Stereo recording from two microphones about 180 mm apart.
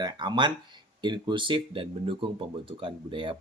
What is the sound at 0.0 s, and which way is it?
Speech, 25° right (ahead or behind).